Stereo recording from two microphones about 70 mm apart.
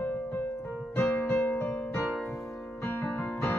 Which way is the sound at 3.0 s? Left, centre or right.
Left.